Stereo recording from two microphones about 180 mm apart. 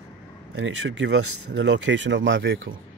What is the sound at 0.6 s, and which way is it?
Speech, 90° right.